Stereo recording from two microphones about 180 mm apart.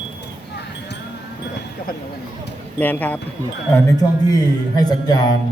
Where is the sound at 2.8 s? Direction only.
10° left (ahead or behind).